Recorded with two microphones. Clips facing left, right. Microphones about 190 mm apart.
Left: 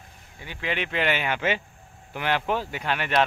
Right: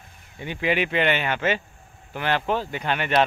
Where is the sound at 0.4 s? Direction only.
15° right (ahead or behind).